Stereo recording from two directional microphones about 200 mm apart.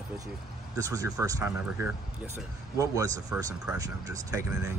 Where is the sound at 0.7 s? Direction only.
15° right (ahead or behind).